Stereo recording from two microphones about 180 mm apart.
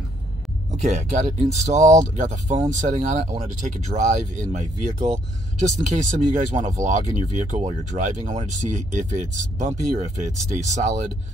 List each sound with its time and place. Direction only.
0.7 s speech: 40° right (ahead or behind)